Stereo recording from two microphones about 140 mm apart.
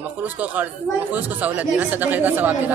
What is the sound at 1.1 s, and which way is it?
Speech, 10° right (ahead or behind).